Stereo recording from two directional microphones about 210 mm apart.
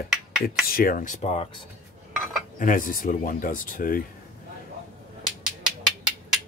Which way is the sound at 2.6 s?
40° left (ahead or behind).